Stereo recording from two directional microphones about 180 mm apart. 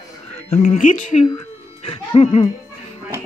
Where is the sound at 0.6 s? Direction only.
45° left (ahead or behind).